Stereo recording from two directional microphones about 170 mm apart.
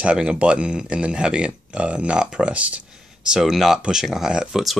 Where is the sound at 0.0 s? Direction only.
5° right (ahead or behind).